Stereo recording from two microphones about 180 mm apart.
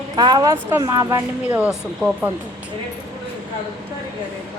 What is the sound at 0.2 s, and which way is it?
Speech, 25° right (ahead or behind).